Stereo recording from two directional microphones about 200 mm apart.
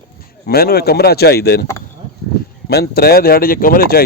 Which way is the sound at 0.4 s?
50° left (ahead or behind).